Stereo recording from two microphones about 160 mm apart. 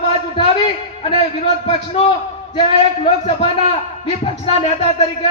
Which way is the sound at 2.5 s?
40° left (ahead or behind).